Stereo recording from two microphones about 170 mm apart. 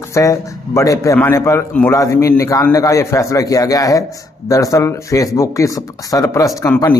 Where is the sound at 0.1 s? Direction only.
20° left (ahead or behind).